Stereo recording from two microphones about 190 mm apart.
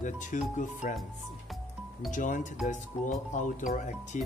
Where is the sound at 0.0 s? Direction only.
40° left (ahead or behind).